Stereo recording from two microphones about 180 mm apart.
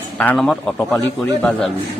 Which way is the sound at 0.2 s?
5° left (ahead or behind).